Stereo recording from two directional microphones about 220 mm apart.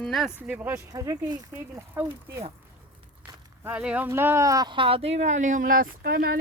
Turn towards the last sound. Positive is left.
turn(degrees=-40)  # may be behind; listen again after turning